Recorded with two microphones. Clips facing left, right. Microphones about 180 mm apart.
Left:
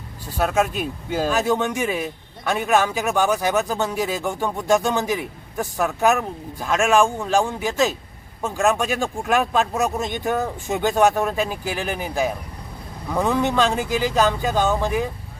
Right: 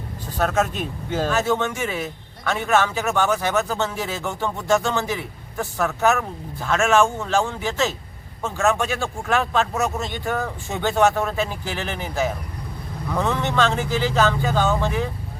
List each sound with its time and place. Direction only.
0.3 s speech: 10° left (ahead or behind)